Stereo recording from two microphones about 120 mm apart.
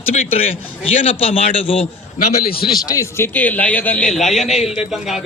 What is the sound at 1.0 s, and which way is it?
A man's voice, 50° left (ahead or behind).